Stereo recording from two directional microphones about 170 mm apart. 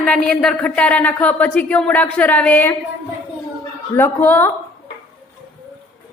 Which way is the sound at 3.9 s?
10° left (ahead or behind).